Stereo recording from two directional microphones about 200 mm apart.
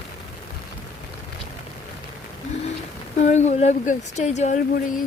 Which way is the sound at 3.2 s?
35° left (ahead or behind).